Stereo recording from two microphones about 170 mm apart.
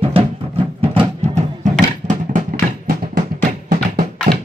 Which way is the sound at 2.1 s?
55° right (ahead or behind).